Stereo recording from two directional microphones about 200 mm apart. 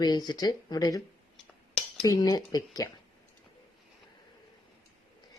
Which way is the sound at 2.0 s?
15° left (ahead or behind).